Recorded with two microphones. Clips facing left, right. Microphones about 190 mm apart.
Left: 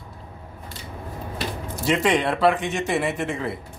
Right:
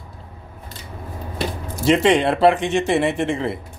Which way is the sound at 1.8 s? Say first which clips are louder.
Right 5 dB; 25° right (ahead or behind).